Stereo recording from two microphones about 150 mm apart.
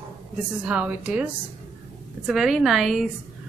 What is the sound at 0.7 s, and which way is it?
Speech, 5° right (ahead or behind).